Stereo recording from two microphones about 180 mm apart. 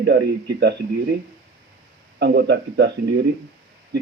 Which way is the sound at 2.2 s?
65° right (ahead or behind).